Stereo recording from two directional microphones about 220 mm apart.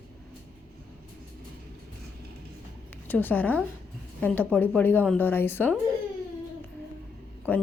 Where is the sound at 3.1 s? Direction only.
10° left (ahead or behind).